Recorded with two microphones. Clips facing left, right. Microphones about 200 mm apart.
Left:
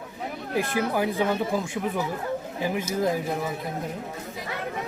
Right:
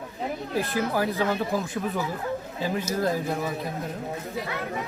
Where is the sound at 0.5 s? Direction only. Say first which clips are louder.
Left 2 dB; 15° left (ahead or behind).